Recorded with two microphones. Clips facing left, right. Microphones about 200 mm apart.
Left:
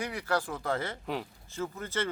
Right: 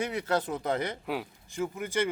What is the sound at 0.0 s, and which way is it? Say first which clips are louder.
Speech: right 3 dB; 20° right (ahead or behind).